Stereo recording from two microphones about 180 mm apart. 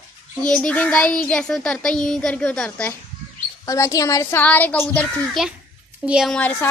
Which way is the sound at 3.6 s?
20° left (ahead or behind).